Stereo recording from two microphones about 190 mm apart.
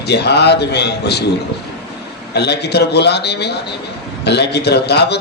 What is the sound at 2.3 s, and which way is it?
A man's voice, 60° left (ahead or behind).